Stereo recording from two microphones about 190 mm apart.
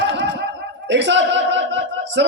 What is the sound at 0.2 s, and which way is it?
A man's voice, 70° right (ahead or behind).